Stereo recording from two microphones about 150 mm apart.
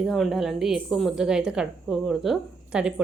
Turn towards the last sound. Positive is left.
turn(degrees=-5)  # may be behind; listen again after turning